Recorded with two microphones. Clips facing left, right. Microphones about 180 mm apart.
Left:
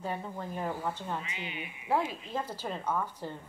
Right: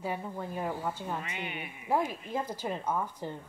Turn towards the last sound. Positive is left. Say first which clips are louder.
# right 1 dB
turn(degrees=-15)  # may be behind; listen again after turning